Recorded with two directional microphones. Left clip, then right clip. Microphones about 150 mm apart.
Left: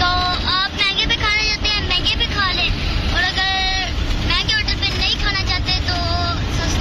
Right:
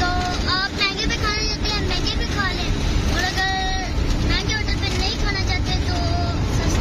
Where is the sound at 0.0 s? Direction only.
10° right (ahead or behind).